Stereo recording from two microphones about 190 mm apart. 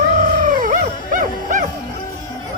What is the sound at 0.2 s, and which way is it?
Dog, 40° right (ahead or behind).